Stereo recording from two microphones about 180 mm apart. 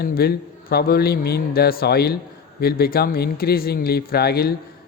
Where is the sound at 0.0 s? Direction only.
60° left (ahead or behind).